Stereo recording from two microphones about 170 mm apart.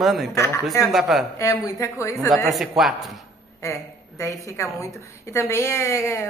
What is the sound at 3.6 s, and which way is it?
A woman's voice, 15° left (ahead or behind).